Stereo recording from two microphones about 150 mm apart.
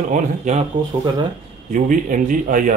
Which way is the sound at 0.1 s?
50° right (ahead or behind).